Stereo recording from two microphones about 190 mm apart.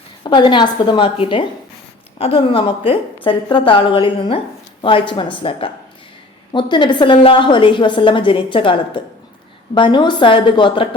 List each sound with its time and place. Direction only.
0.2 s a woman's voice: 25° left (ahead or behind)